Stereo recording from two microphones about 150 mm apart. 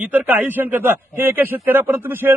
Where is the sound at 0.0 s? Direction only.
10° right (ahead or behind).